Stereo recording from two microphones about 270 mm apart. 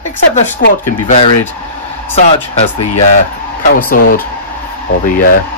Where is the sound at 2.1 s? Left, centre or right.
Left.